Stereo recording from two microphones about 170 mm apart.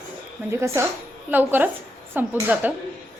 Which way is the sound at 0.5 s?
15° right (ahead or behind).